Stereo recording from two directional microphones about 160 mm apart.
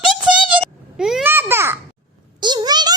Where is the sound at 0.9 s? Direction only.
5° right (ahead or behind).